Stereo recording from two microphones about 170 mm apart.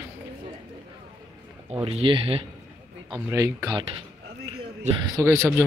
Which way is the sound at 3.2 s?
20° right (ahead or behind).